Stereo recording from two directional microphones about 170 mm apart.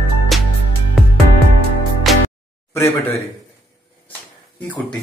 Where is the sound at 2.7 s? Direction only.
15° left (ahead or behind).